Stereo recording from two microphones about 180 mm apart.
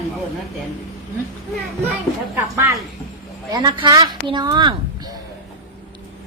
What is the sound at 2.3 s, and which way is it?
A woman's voice, 15° right (ahead or behind).